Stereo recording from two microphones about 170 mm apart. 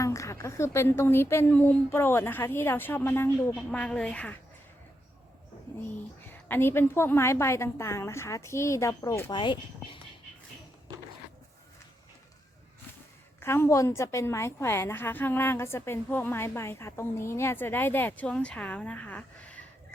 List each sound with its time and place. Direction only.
0.0 s a woman's voice: 20° left (ahead or behind)
6.5 s a woman's voice: 15° left (ahead or behind)
9.3 s speech: 30° left (ahead or behind)
13.4 s a woman's voice: 15° left (ahead or behind)